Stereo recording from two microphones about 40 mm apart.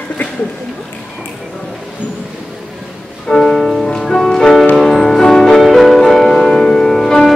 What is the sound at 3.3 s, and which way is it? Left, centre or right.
Music, centre.